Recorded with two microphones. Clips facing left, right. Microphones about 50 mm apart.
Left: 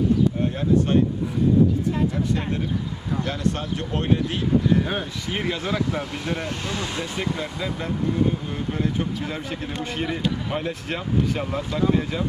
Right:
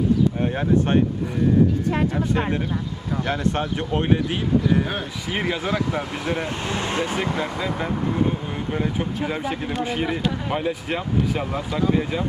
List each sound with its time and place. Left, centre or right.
0.4 s speech: right
3.3 s speech: right
6.6 s speech: right
8.7 s speech: centre